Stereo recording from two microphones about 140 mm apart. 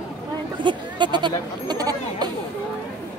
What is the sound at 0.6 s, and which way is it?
Speech, 35° right (ahead or behind).